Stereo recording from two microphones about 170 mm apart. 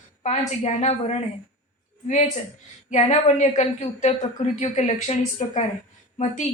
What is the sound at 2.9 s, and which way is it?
A woman's voice, 45° left (ahead or behind).